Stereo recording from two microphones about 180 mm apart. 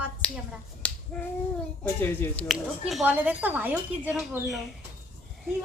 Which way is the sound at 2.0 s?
10° left (ahead or behind).